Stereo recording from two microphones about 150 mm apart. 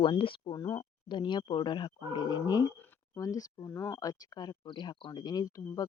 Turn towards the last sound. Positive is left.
turn(degrees=25)  # may be behind; listen again after turning